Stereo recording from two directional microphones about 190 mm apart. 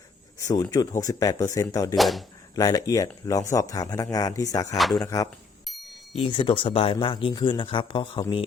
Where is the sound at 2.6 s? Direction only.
20° left (ahead or behind).